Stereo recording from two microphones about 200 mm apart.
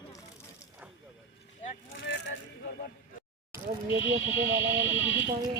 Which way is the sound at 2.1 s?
60° left (ahead or behind).